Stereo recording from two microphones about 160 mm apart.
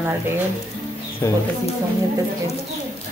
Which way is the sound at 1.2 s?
15° left (ahead or behind).